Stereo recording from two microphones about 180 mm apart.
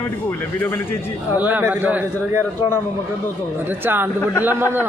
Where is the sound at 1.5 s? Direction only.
10° right (ahead or behind).